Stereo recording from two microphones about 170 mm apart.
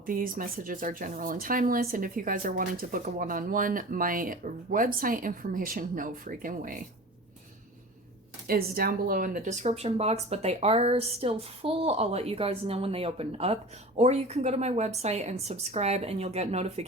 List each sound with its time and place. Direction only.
0.0 s speech: 55° right (ahead or behind)
8.4 s speech: 60° right (ahead or behind); by 16.8 s 40° right (ahead or behind)